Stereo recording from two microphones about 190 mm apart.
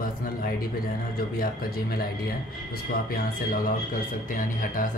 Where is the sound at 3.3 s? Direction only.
45° left (ahead or behind).